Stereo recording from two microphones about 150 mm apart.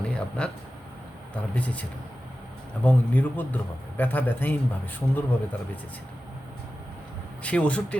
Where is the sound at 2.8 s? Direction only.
10° left (ahead or behind).